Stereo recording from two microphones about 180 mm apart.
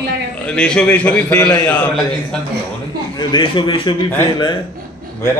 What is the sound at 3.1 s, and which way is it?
A man's voice, 25° left (ahead or behind).